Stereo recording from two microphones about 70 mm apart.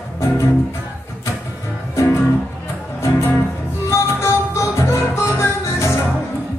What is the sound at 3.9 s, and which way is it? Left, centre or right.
Music, left.